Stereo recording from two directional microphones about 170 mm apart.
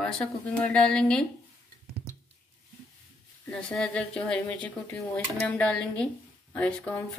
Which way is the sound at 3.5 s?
5° left (ahead or behind).